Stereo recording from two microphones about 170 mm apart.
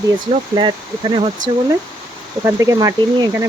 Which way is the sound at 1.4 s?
90° right.